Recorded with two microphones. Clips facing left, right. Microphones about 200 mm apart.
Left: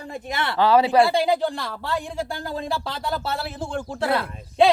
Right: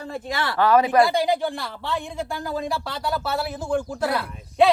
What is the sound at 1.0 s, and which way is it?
Speech, 25° left (ahead or behind).